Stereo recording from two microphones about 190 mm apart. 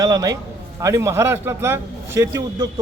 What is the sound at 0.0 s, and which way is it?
A man's voice, 20° right (ahead or behind).